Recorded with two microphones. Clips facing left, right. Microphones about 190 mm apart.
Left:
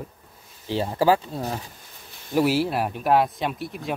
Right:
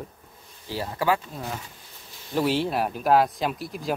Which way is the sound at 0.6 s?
25° left (ahead or behind).